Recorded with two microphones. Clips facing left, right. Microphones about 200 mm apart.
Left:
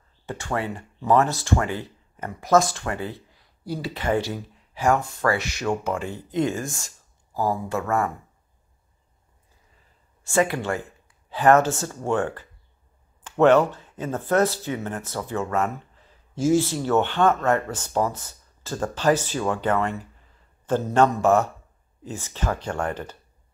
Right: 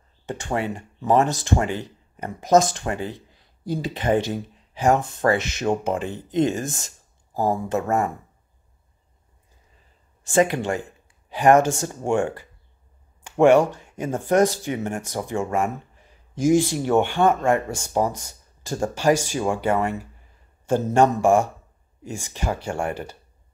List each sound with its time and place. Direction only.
0.3 s speech: 20° right (ahead or behind)
10.2 s speech: 20° right (ahead or behind)